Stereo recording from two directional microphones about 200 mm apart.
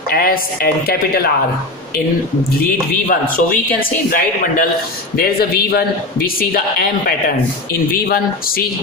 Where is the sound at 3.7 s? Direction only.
45° left (ahead or behind).